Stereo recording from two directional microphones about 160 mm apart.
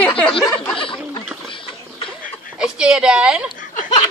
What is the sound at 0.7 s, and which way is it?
Snicker, 35° left (ahead or behind).